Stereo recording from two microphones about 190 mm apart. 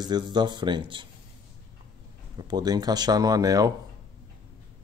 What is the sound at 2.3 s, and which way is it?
Speech, 20° right (ahead or behind).